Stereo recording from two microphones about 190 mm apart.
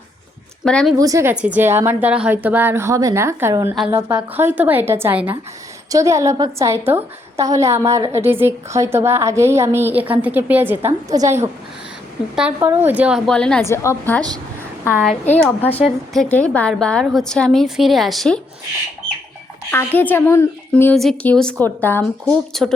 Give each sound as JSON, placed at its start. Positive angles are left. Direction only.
{"t": 0.6, "sound": "a woman's voice", "side_deg": 5}
{"t": 0.9, "sound": "a woman's voice", "side_deg": -15}
{"t": 12.5, "sound": "a woman's voice", "side_deg": -15}
{"t": 15.1, "sound": "speech", "side_deg": 35}
{"t": 15.4, "sound": "a woman's voice", "side_deg": 5}
{"t": 19.7, "sound": "speech", "side_deg": 10}
{"t": 20.9, "sound": "a woman's voice", "side_deg": 0}